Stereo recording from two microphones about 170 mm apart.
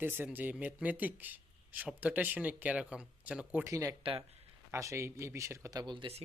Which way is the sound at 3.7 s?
20° right (ahead or behind).